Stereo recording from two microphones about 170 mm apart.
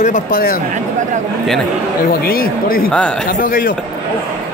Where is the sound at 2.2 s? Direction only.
60° left (ahead or behind).